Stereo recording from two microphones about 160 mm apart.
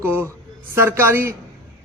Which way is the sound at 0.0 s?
15° right (ahead or behind).